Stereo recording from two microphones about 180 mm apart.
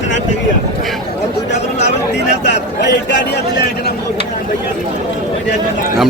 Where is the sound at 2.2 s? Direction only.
70° left (ahead or behind).